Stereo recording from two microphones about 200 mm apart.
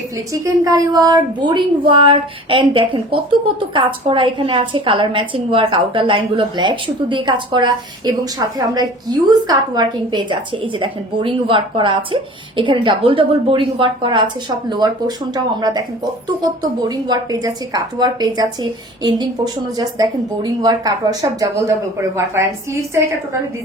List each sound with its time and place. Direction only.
0.4 s speech: 20° right (ahead or behind)
17.1 s a woman's voice: 20° right (ahead or behind)